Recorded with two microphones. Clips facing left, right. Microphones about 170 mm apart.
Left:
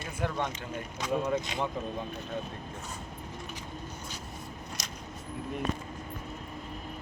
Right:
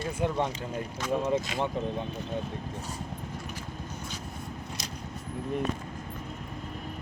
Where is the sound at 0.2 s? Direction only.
30° right (ahead or behind).